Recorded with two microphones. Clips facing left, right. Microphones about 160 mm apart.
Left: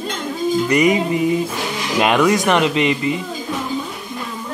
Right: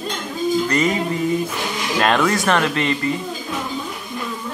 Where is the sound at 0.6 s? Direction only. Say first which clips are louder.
Left 4 dB; 15° left (ahead or behind).